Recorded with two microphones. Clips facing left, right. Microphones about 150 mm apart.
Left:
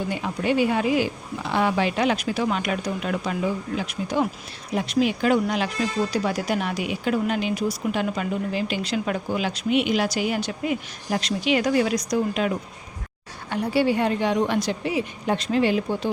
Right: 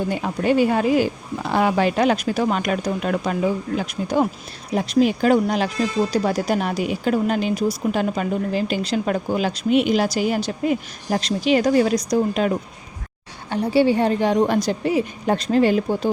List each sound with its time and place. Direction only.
0.1 s speech: 45° right (ahead or behind)
13.5 s speech: 30° right (ahead or behind)